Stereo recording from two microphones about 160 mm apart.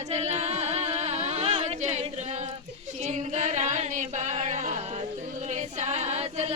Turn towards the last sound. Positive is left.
turn(degrees=-40)  # may be behind; listen again after turning